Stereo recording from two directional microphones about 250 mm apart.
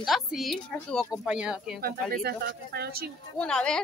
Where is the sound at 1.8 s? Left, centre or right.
Right.